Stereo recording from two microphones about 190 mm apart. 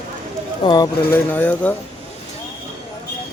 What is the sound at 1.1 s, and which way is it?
Speech, 10° left (ahead or behind).